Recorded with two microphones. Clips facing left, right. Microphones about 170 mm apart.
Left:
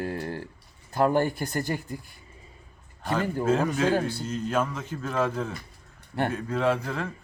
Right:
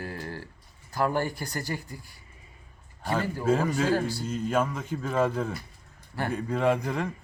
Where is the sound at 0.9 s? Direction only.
25° left (ahead or behind).